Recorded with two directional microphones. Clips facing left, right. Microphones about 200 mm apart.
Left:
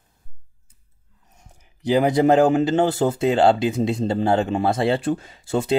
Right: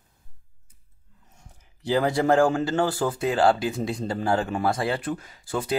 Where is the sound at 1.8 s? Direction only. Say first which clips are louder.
Left 5 dB; 20° left (ahead or behind).